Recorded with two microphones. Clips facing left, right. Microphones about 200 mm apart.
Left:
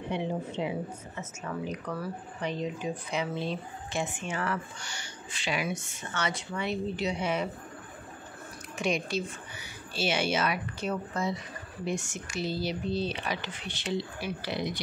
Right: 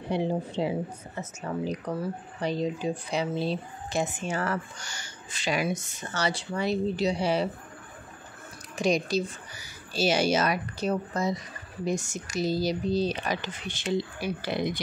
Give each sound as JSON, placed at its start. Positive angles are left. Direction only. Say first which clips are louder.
{"t": 0.1, "sound": "speech", "louder": "right 5 dB", "side_deg": -35}
{"t": 8.7, "sound": "speech", "louder": "right 5 dB", "side_deg": -35}